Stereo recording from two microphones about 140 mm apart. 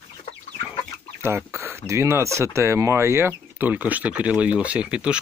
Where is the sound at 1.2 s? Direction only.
20° right (ahead or behind).